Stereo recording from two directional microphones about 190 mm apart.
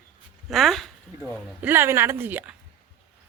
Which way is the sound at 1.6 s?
10° right (ahead or behind).